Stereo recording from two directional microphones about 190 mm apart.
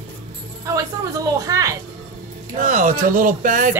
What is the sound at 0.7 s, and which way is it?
A woman's voice, 15° right (ahead or behind).